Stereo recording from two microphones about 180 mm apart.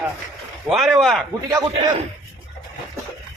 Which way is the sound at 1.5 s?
20° right (ahead or behind).